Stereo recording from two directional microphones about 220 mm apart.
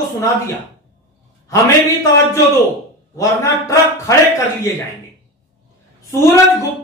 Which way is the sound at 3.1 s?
15° left (ahead or behind).